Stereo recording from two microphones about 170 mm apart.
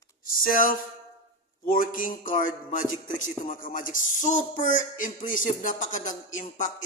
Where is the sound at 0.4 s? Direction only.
55° left (ahead or behind).